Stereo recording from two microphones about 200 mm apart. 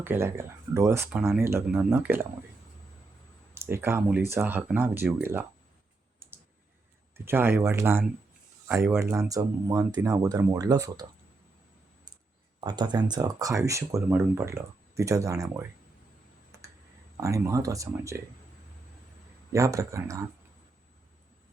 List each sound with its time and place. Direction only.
0.0 s speech: 10° right (ahead or behind)
3.5 s speech: 10° right (ahead or behind)
7.3 s speech: 10° right (ahead or behind)
12.5 s speech: 20° right (ahead or behind)
16.5 s clicking: 15° right (ahead or behind)
17.2 s speech: 15° right (ahead or behind)
19.5 s speech: 15° right (ahead or behind)